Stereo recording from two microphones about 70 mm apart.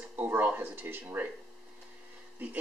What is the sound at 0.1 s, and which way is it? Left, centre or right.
Speech, right.